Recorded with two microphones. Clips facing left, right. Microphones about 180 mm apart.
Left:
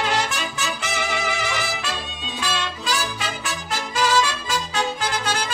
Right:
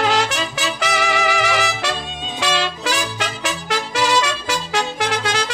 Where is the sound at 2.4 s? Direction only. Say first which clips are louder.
Right 6 dB; 85° right.